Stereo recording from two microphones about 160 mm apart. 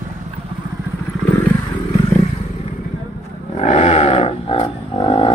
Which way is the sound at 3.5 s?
45° left (ahead or behind).